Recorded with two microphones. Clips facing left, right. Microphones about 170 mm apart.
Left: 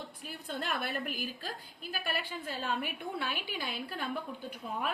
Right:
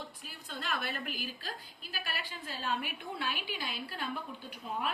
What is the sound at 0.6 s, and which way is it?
A woman's voice, 50° left (ahead or behind).